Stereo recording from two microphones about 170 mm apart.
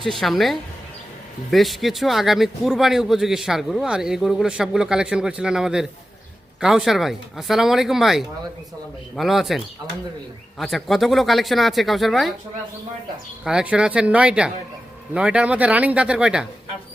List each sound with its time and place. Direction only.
0.0 s a man's voice: centre (ahead or behind)
13.4 s a man's voice: 5° right (ahead or behind)